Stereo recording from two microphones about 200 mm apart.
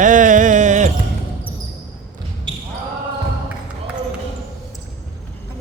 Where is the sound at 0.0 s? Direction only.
40° right (ahead or behind).